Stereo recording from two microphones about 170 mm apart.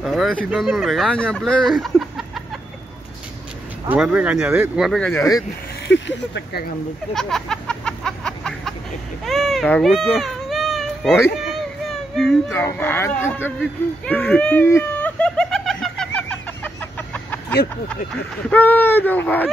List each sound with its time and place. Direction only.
0.0 s speech: centre (ahead or behind)
3.9 s speech: 10° right (ahead or behind)
5.1 s speech: 20° left (ahead or behind)
5.9 s speech: 90° left
7.2 s a sound: 5° left (ahead or behind)
9.2 s speech: centre (ahead or behind)
12.2 s speech: centre (ahead or behind)
12.5 s speech: 15° left (ahead or behind)
14.0 s a sound: 5° left (ahead or behind)
18.5 s speech: 10° left (ahead or behind)